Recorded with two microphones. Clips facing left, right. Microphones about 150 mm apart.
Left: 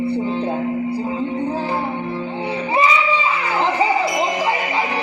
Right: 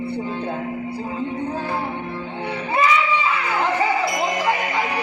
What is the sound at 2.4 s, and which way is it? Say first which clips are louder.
Music: left 1 dB; 10° left (ahead or behind).